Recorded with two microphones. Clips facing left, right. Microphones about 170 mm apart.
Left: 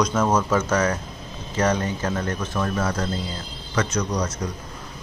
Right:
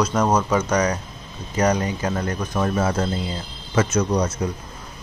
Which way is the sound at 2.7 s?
25° right (ahead or behind).